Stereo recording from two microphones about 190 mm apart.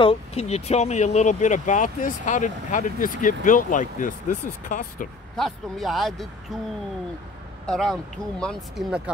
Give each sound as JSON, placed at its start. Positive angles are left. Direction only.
{"t": 0.0, "sound": "speech", "side_deg": 30}
{"t": 5.3, "sound": "speech", "side_deg": 0}
{"t": 7.6, "sound": "speech", "side_deg": 0}